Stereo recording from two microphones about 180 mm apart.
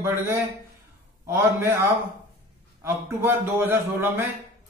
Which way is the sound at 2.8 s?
10° right (ahead or behind).